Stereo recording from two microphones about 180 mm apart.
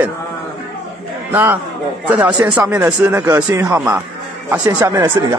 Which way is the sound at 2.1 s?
5° right (ahead or behind).